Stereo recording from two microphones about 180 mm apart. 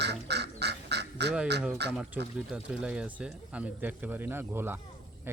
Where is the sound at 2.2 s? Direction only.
5° right (ahead or behind).